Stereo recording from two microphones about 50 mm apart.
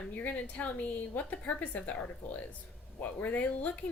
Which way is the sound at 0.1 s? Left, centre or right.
Left.